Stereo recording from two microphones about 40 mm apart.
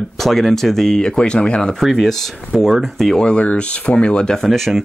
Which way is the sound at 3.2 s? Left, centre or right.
Left.